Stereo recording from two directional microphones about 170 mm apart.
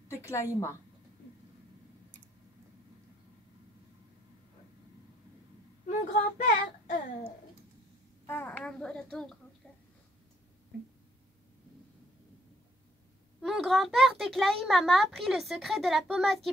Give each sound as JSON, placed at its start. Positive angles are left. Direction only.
{"t": 0.2, "sound": "a woman's voice", "side_deg": 15}
{"t": 5.9, "sound": "speech", "side_deg": 45}
{"t": 8.3, "sound": "a child's voice", "side_deg": 10}
{"t": 13.4, "sound": "speech", "side_deg": 0}